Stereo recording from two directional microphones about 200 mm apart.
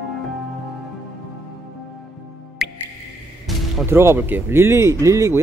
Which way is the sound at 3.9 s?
10° right (ahead or behind).